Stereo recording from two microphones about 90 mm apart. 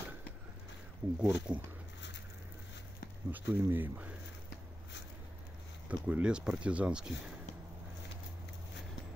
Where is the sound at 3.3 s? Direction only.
20° right (ahead or behind).